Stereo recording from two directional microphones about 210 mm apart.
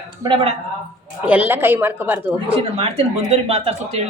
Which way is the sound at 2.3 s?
25° right (ahead or behind).